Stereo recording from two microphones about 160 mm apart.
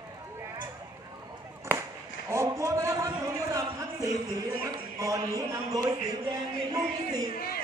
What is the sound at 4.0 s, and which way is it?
A man's voice, 15° right (ahead or behind).